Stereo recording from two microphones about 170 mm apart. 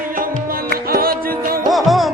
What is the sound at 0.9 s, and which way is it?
Music, 60° right (ahead or behind).